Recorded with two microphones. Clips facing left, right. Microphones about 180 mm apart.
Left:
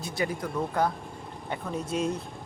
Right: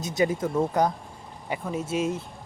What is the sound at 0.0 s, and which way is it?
Speech, 20° right (ahead or behind).